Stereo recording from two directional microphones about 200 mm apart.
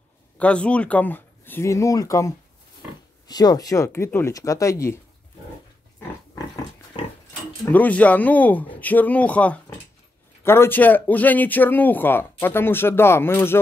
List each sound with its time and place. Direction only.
0.4 s speech: 5° left (ahead or behind)
5.9 s pig: 15° left (ahead or behind)
7.0 s pig: 30° left (ahead or behind)
7.6 s speech: 10° left (ahead or behind)